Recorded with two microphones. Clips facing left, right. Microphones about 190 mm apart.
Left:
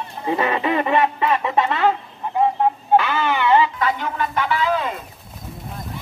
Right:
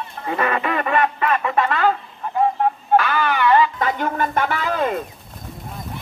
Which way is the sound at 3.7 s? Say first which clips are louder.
Right 1 dB; 45° right (ahead or behind).